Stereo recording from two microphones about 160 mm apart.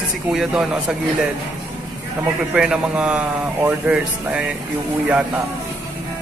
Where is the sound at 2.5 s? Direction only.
5° right (ahead or behind).